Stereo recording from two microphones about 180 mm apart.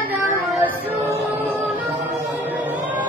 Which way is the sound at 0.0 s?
10° right (ahead or behind).